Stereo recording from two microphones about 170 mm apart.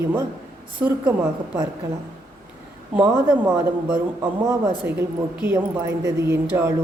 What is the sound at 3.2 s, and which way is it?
Speech, 15° right (ahead or behind).